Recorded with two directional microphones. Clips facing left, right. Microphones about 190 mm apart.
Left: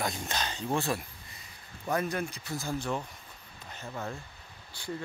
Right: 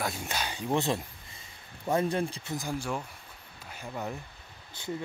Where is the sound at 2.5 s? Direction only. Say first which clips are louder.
Left 1 dB; 10° right (ahead or behind).